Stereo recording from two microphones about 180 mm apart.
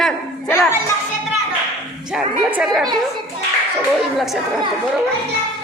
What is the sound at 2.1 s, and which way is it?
Speech, 5° right (ahead or behind).